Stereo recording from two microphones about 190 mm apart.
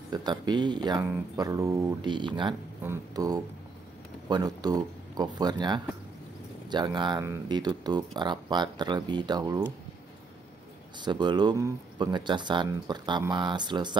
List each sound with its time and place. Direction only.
0.1 s speech: 20° right (ahead or behind)
11.0 s speech: 25° right (ahead or behind)